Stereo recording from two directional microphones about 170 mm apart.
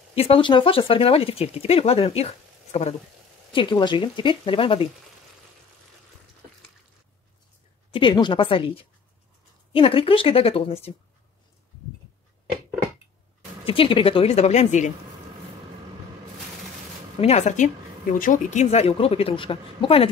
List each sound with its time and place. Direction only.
0.1 s speech: 35° left (ahead or behind)
3.5 s speech: 25° left (ahead or behind)
7.9 s speech: 25° left (ahead or behind)
13.7 s speech: 30° left (ahead or behind)
17.2 s speech: 40° left (ahead or behind)